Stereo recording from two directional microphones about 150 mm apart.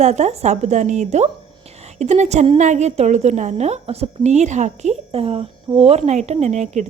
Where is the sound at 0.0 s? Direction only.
50° right (ahead or behind).